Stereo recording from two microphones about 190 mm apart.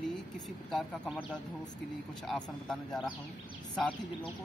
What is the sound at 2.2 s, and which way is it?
Speech, centre (ahead or behind).